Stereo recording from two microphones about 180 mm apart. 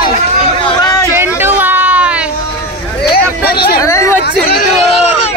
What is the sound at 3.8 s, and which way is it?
Chatter, 15° left (ahead or behind).